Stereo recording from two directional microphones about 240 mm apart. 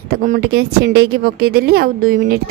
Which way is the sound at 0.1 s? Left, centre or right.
Right.